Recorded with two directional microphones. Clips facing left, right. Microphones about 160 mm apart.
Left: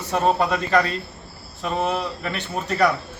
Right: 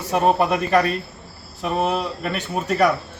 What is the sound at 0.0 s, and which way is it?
A man's voice, 10° right (ahead or behind).